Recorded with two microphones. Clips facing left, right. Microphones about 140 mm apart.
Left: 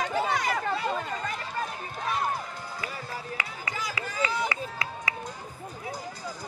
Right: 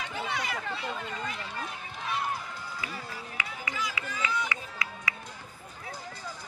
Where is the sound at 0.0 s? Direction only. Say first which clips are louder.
Left 7 dB; 40° left (ahead or behind).